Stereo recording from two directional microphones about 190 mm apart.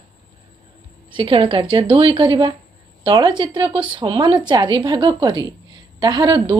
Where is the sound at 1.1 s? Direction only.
30° right (ahead or behind).